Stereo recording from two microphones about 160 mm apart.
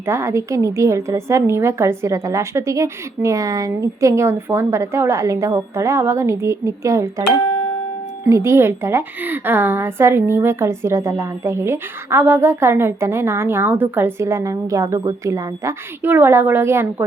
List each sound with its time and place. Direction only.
0.0 s a woman's voice: 15° right (ahead or behind)
8.3 s a woman's voice: 15° right (ahead or behind)